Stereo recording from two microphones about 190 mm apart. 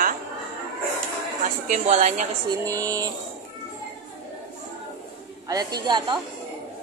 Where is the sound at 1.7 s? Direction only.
40° right (ahead or behind).